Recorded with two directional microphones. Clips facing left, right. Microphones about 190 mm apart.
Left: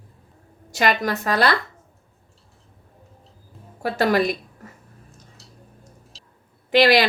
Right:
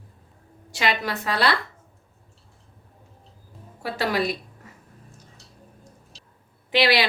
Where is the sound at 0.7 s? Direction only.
45° left (ahead or behind).